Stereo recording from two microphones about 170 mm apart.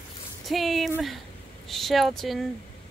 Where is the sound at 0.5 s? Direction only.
Centre (ahead or behind).